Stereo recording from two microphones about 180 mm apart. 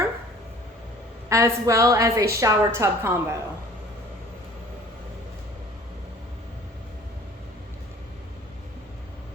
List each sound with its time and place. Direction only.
1.3 s a woman's voice: 15° right (ahead or behind)